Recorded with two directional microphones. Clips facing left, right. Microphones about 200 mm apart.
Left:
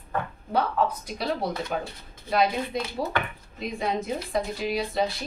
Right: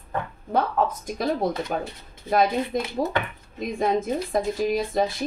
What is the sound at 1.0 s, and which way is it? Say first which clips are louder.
A woman's voice: right 4 dB; 45° right (ahead or behind).